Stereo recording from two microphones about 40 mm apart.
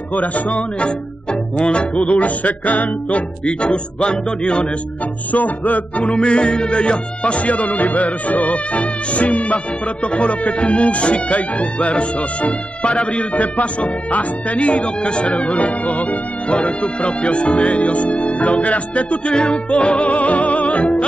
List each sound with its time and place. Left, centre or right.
0.1 s speech: left
0.6 s music: left
5.3 s speech: left